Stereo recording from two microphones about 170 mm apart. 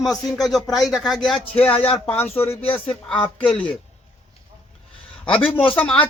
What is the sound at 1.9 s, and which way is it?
Speech, 10° left (ahead or behind).